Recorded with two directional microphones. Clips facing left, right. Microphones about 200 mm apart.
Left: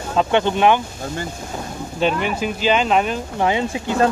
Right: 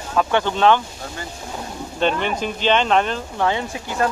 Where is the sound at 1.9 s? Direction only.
5° left (ahead or behind).